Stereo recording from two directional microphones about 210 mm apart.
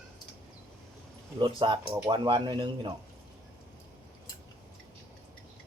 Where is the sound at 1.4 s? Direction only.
20° right (ahead or behind).